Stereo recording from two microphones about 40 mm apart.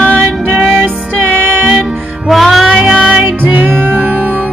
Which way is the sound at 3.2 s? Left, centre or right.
Right.